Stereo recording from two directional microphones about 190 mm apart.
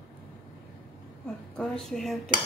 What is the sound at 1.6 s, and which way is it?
Speech, centre (ahead or behind).